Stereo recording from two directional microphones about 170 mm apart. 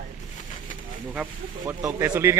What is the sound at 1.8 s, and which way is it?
Speech, 10° right (ahead or behind).